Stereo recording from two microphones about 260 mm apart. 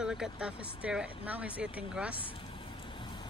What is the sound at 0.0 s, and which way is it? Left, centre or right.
Speech, centre.